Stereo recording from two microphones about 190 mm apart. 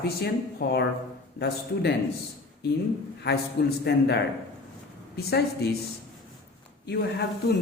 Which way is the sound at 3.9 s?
60° left (ahead or behind).